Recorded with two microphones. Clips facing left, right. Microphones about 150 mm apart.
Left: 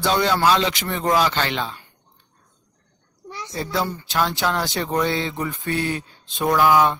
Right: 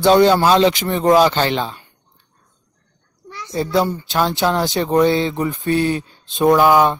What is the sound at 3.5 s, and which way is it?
Speech, 20° right (ahead or behind).